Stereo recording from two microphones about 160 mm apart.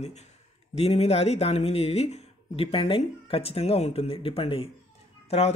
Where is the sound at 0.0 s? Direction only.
45° left (ahead or behind).